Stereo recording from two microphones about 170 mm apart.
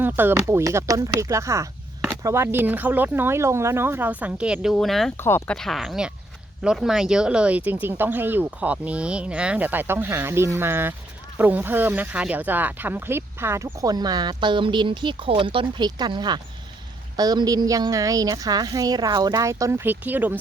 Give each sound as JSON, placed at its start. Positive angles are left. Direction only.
{"t": 0.0, "sound": "speech", "side_deg": -10}
{"t": 5.1, "sound": "speech", "side_deg": 15}
{"t": 5.5, "sound": "a woman's voice", "side_deg": 0}